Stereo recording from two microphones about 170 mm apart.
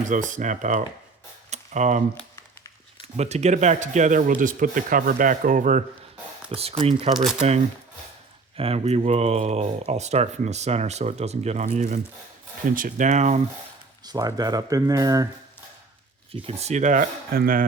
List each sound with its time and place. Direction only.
0.1 s speech: 50° right (ahead or behind)
1.5 s a sound: 45° right (ahead or behind)
3.2 s speech: 40° right (ahead or behind)
6.5 s speech: 35° right (ahead or behind)
8.5 s speech: 35° right (ahead or behind)
14.0 s speech: 20° right (ahead or behind)
16.3 s speech: 40° right (ahead or behind); by 17.7 s 60° right (ahead or behind)